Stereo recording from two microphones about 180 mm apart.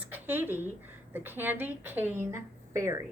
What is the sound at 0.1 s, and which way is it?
A woman's voice, 10° right (ahead or behind).